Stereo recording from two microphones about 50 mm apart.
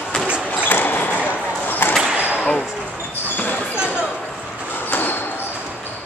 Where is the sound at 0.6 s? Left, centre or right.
Left.